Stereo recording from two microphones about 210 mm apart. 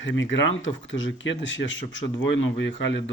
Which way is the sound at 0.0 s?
60° left (ahead or behind).